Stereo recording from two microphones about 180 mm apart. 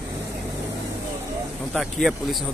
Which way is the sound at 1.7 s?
Centre (ahead or behind).